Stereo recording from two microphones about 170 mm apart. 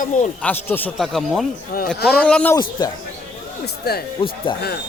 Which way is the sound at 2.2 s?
5° left (ahead or behind).